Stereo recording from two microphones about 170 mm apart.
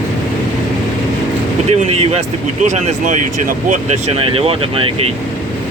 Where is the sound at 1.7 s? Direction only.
40° right (ahead or behind).